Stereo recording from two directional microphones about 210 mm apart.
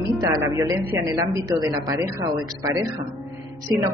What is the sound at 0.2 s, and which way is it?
Speech, 15° right (ahead or behind).